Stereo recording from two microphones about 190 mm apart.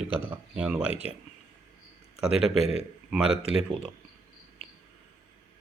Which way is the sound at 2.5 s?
35° left (ahead or behind).